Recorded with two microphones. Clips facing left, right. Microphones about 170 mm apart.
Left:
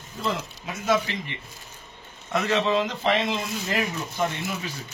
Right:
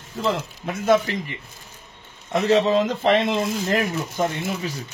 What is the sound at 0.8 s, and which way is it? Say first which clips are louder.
Speech: right 5 dB; 50° right (ahead or behind).